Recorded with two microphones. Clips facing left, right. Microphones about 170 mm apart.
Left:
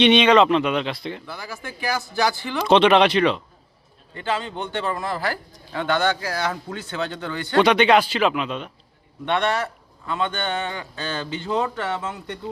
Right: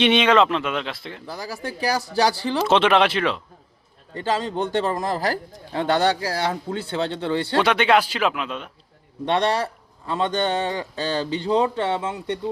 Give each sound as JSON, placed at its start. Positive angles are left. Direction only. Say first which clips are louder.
{"t": 0.0, "sound": "speech", "louder": "left 2 dB", "side_deg": -5}
{"t": 1.3, "sound": "speech", "louder": "right 4 dB", "side_deg": -35}
{"t": 2.6, "sound": "speech", "louder": "left 3 dB", "side_deg": -5}
{"t": 4.1, "sound": "speech", "louder": "right 3 dB", "side_deg": -35}
{"t": 7.6, "sound": "speech", "louder": "left 4 dB", "side_deg": -5}
{"t": 9.2, "sound": "speech", "louder": "right 1 dB", "side_deg": -35}